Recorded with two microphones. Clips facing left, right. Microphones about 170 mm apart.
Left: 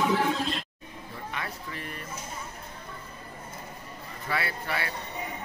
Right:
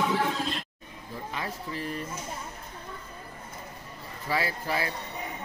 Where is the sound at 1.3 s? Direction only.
30° right (ahead or behind).